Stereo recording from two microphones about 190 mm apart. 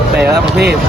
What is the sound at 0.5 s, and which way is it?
Speech, 60° right (ahead or behind).